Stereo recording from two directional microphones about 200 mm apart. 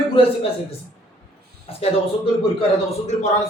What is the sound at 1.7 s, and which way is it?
Speech, 30° left (ahead or behind).